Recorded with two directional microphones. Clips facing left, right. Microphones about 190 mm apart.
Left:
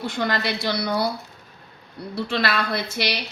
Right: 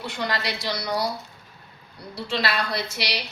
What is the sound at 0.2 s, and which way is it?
Speech, 55° left (ahead or behind).